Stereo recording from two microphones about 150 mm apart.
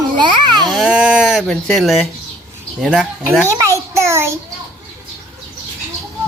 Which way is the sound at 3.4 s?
20° right (ahead or behind).